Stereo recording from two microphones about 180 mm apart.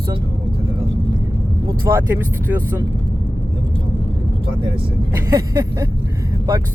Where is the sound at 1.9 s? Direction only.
10° right (ahead or behind).